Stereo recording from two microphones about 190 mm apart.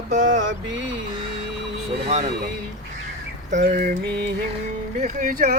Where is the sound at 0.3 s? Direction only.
75° right (ahead or behind).